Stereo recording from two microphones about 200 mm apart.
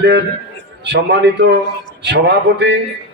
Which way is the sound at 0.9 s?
60° right (ahead or behind).